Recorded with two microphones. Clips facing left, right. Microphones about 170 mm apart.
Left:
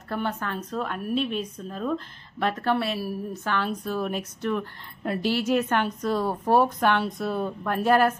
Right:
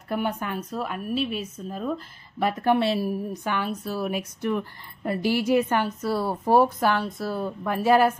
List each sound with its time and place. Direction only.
0.1 s a woman's voice: 15° right (ahead or behind)
2.8 s a woman's voice: 25° right (ahead or behind)